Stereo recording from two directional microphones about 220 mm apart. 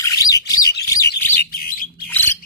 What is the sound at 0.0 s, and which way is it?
Bird, 15° left (ahead or behind).